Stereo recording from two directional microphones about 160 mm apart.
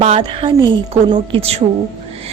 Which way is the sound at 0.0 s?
40° right (ahead or behind).